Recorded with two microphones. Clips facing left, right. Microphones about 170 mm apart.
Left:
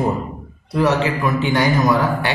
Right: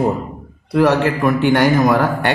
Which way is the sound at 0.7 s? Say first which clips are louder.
Right 3 dB; 55° right (ahead or behind).